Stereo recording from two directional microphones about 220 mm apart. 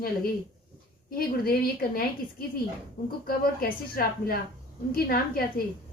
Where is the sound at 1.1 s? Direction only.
40° left (ahead or behind).